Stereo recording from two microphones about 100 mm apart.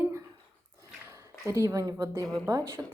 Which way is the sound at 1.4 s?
30° right (ahead or behind).